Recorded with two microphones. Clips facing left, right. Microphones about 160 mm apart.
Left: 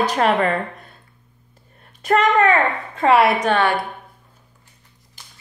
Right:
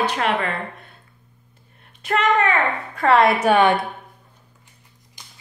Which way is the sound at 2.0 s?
40° left (ahead or behind).